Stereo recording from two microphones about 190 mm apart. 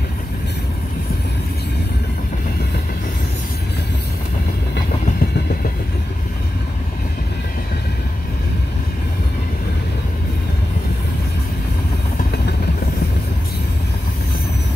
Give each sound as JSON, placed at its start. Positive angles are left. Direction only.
{"t": 5.2, "sound": "train", "side_deg": 50}